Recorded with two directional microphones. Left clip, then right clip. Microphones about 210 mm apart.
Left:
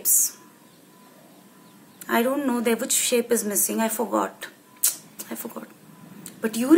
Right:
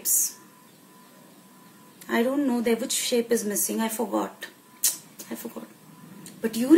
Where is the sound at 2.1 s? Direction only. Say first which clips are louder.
Left 2 dB; 5° right (ahead or behind).